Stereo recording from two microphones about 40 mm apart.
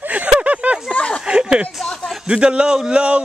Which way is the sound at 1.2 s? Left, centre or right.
Right.